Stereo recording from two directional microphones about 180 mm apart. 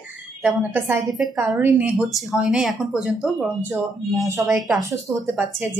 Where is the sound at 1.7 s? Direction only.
Centre (ahead or behind).